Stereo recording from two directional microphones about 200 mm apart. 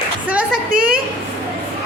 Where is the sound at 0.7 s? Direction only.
45° right (ahead or behind).